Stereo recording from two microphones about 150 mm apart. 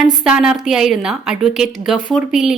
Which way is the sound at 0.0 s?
5° right (ahead or behind).